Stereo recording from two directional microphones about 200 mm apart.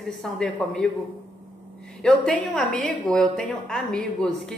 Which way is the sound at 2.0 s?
5° left (ahead or behind).